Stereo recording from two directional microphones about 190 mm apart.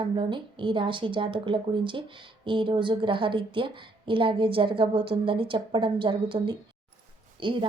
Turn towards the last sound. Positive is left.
turn(degrees=-25)  # may be behind; listen again after turning